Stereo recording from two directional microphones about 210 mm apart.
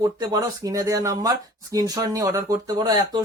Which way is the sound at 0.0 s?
15° right (ahead or behind).